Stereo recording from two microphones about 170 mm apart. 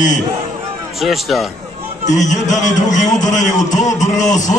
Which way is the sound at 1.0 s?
Centre (ahead or behind).